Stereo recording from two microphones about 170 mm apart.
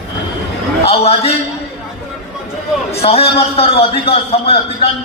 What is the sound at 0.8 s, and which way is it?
Speech, 35° left (ahead or behind).